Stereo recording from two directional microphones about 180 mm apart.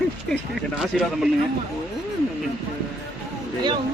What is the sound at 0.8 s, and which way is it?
Speech, 5° right (ahead or behind).